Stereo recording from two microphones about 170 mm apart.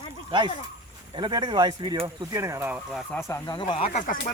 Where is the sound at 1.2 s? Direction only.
30° right (ahead or behind).